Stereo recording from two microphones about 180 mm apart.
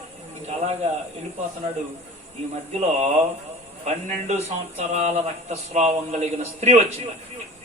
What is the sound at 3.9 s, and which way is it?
Speech, 35° right (ahead or behind).